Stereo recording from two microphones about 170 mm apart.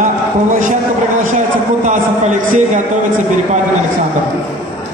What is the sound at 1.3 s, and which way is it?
A man's voice, 50° right (ahead or behind).